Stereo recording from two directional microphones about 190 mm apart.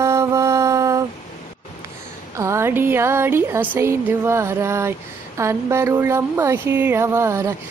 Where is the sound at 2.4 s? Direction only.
15° right (ahead or behind).